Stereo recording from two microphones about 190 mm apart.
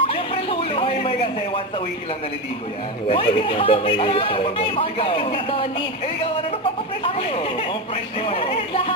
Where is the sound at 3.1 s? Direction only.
30° left (ahead or behind).